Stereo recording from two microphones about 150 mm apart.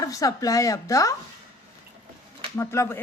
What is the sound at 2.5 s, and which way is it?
Speech, 20° left (ahead or behind).